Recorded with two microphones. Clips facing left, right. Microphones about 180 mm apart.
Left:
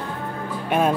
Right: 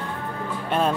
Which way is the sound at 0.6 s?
10° left (ahead or behind).